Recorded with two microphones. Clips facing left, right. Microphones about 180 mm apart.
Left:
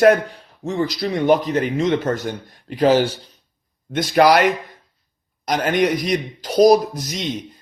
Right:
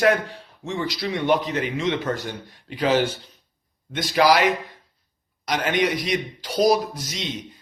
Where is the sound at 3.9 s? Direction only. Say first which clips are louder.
Left 4 dB; 50° left (ahead or behind).